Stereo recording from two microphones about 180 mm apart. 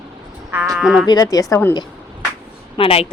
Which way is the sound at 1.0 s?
20° left (ahead or behind).